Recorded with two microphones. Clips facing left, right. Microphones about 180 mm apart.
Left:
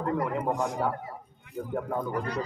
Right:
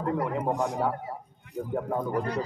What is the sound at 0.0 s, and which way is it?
Speech, 10° right (ahead or behind).